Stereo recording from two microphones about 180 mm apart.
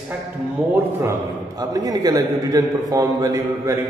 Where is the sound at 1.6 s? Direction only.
20° right (ahead or behind).